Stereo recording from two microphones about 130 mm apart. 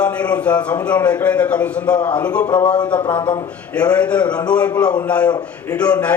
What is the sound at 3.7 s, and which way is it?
A man's voice, 10° left (ahead or behind).